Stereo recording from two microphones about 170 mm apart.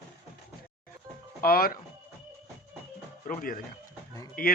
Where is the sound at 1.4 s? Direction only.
60° left (ahead or behind).